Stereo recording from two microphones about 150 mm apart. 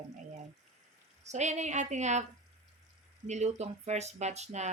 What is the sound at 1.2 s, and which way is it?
A woman's voice, 50° right (ahead or behind).